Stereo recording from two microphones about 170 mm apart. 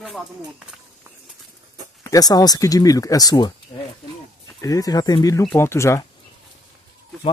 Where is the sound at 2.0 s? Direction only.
20° left (ahead or behind).